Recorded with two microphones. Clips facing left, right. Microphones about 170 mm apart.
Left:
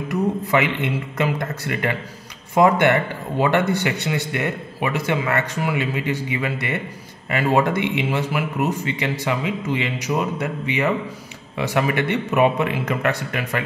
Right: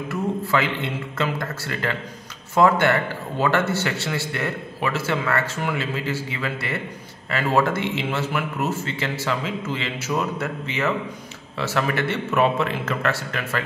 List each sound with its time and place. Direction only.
0.1 s a man's voice: 15° left (ahead or behind)